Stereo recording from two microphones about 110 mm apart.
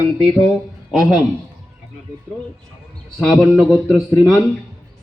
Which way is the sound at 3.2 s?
5° right (ahead or behind).